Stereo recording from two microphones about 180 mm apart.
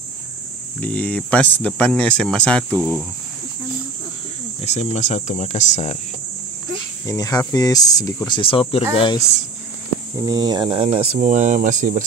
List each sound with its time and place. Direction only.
0.7 s speech: 10° left (ahead or behind)
2.8 s speech: 10° right (ahead or behind)
4.6 s speech: 35° left (ahead or behind)
7.1 s speech: 20° left (ahead or behind)
8.4 s speech: 30° left (ahead or behind)
10.2 s speech: 20° right (ahead or behind); by 12.0 s 45° right (ahead or behind)